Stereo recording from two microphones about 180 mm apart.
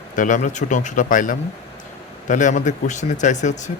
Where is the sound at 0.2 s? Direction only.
45° left (ahead or behind).